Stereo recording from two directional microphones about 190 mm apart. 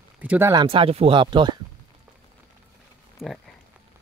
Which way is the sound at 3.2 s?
5° left (ahead or behind).